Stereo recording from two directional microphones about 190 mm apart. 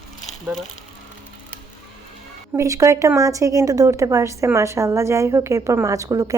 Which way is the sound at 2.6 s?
15° right (ahead or behind).